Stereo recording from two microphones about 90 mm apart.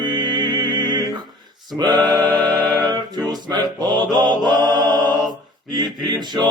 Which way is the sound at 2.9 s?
55° right (ahead or behind).